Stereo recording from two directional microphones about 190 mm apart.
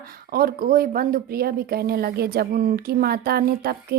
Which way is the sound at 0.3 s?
50° right (ahead or behind).